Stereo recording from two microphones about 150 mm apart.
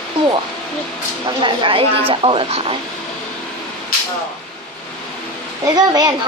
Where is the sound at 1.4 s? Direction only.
35° right (ahead or behind).